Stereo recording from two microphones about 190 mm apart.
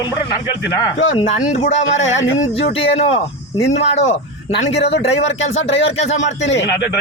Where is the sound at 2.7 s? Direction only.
35° left (ahead or behind).